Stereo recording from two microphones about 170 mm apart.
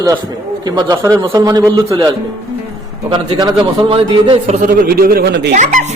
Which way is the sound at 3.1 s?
30° right (ahead or behind).